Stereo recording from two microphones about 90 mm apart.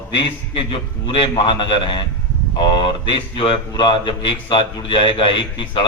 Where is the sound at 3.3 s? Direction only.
70° left (ahead or behind).